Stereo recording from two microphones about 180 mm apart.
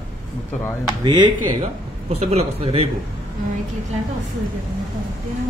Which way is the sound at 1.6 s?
35° right (ahead or behind).